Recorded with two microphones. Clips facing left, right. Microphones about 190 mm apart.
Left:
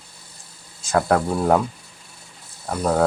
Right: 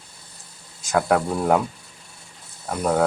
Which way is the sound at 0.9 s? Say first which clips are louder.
Left 1 dB; centre (ahead or behind).